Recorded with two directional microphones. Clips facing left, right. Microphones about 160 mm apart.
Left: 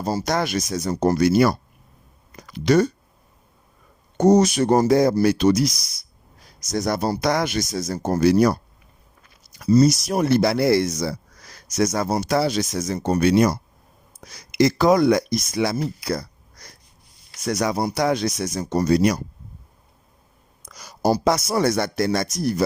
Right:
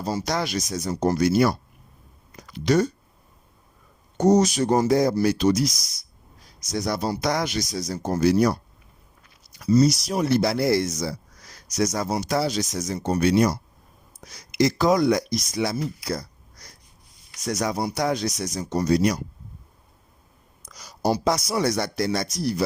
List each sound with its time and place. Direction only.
0.3 s speech: 50° left (ahead or behind); by 2.9 s 70° left (ahead or behind)
4.2 s speech: 60° left (ahead or behind)
6.7 s speech: 45° left (ahead or behind)
8.2 s speech: 70° left (ahead or behind)
9.8 s speech: 50° left (ahead or behind); by 13.6 s 70° left (ahead or behind)
14.5 s speech: 60° left (ahead or behind)
20.7 s a sound: 55° left (ahead or behind)
21.2 s speech: 50° left (ahead or behind)